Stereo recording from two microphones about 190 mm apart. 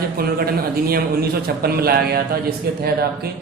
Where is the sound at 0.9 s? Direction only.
55° right (ahead or behind).